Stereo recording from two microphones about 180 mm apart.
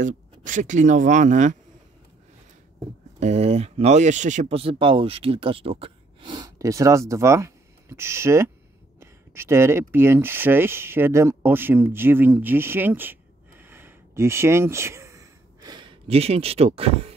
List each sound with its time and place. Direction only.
0.0 s speech: 45° right (ahead or behind)
3.2 s speech: 35° right (ahead or behind)